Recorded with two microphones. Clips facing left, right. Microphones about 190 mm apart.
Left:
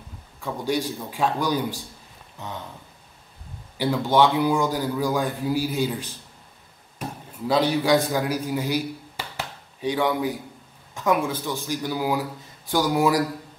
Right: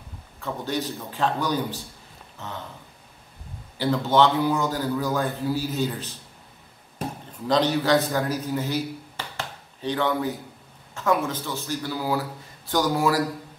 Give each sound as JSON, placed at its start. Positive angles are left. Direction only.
{"t": 0.4, "sound": "a man's voice", "side_deg": 10}
{"t": 3.7, "sound": "a man's voice", "side_deg": 10}
{"t": 7.4, "sound": "a man's voice", "side_deg": 10}